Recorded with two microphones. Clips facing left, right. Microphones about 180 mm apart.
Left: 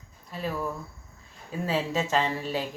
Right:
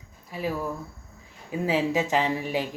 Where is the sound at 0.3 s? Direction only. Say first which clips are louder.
Right 2 dB; 10° right (ahead or behind).